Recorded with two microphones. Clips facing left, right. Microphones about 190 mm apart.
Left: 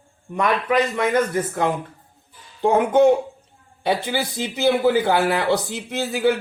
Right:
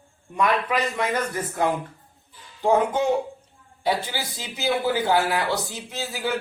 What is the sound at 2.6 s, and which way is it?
A man's voice, 60° left (ahead or behind).